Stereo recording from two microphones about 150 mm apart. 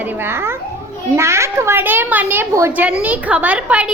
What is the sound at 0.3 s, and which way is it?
A child's voice, 15° right (ahead or behind).